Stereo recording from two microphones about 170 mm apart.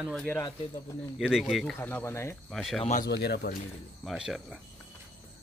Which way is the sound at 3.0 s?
75° left (ahead or behind).